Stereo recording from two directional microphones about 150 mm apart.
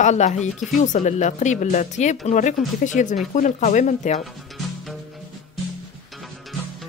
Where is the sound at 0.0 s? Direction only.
50° left (ahead or behind).